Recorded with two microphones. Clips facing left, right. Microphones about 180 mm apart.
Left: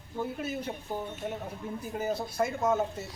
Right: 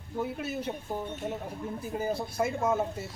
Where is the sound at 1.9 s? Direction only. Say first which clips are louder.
Even; 10° right (ahead or behind).